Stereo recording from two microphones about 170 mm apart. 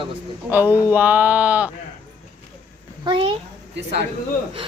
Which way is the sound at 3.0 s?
30° right (ahead or behind).